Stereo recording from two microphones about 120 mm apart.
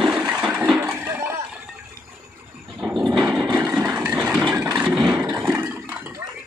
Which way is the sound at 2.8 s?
5° right (ahead or behind).